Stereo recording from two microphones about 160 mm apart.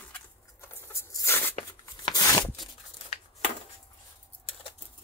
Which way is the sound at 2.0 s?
25° left (ahead or behind).